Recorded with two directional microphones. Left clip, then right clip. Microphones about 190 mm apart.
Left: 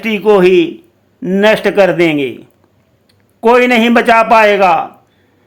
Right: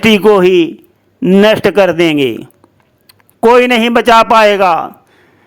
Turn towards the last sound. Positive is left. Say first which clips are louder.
# even
turn(degrees=-35)  # may be behind; listen again after turning